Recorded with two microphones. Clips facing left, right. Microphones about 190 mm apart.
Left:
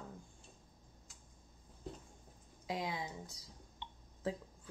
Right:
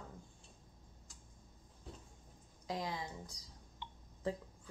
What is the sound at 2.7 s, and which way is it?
Speech, 5° left (ahead or behind).